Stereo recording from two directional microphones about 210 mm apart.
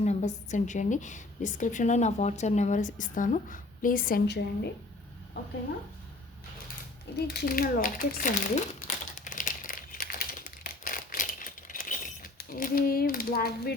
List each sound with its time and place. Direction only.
0.0 s a woman's voice: 35° left (ahead or behind); by 4.7 s 50° left (ahead or behind)
7.2 s speech: 50° left (ahead or behind)
9.1 s crumpling: 40° left (ahead or behind)
12.4 s speech: 40° left (ahead or behind)